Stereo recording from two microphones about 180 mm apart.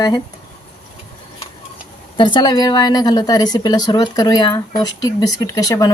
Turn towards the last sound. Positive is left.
turn(degrees=20)  # may be behind; listen again after turning